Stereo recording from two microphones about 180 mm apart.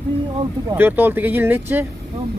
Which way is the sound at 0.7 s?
10° right (ahead or behind).